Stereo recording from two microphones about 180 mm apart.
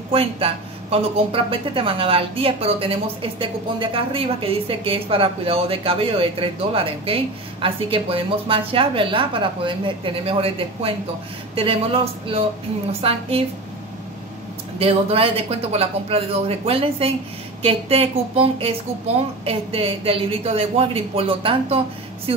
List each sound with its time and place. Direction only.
0.1 s speech: 30° right (ahead or behind)
14.8 s speech: 35° right (ahead or behind)